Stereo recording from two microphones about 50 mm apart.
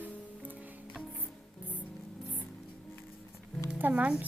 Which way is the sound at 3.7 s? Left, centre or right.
Right.